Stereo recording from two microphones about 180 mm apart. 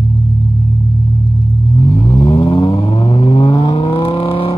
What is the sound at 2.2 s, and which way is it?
Vehicle, 30° left (ahead or behind).